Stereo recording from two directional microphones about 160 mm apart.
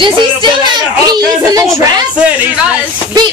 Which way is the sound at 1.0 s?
25° right (ahead or behind).